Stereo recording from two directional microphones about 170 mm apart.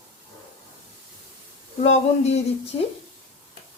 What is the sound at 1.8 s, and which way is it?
Speech, 40° left (ahead or behind).